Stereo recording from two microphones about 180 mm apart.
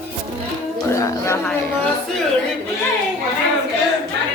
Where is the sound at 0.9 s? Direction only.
15° left (ahead or behind).